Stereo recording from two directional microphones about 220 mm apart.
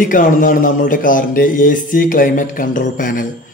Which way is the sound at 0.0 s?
40° left (ahead or behind).